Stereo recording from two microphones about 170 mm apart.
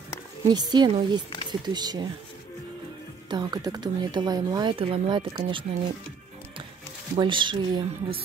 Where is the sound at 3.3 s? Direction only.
25° right (ahead or behind).